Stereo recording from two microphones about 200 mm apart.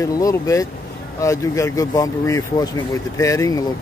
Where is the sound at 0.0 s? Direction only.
15° left (ahead or behind).